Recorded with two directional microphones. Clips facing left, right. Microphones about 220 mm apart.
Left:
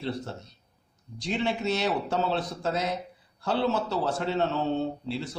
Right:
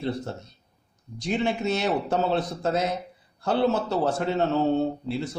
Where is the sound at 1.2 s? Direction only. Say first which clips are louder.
Right 3 dB; 50° right (ahead or behind).